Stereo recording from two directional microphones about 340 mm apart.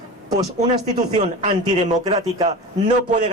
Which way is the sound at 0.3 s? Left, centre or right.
Centre.